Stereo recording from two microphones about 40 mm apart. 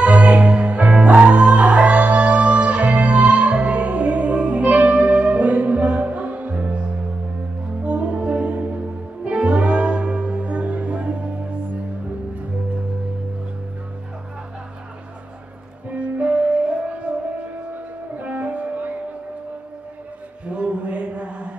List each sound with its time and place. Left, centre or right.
0.0 s music: right
16.0 s music: right
18.2 s music: right
20.4 s a sound: right